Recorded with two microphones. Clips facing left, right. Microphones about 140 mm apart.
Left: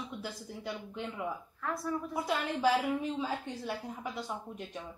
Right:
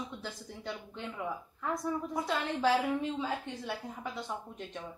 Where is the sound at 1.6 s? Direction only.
20° right (ahead or behind).